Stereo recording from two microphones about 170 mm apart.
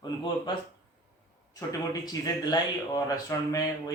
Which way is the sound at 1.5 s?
20° left (ahead or behind).